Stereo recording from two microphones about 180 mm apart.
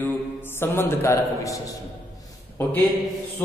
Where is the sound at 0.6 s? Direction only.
10° left (ahead or behind).